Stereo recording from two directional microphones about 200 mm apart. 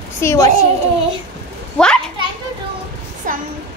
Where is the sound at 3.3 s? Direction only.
40° right (ahead or behind).